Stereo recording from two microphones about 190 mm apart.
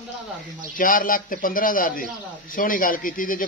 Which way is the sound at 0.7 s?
45° left (ahead or behind).